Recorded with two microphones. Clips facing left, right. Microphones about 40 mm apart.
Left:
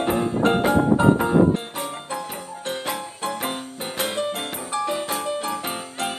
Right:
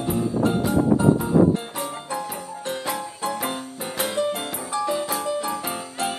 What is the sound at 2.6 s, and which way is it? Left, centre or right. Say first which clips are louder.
Music: even; left.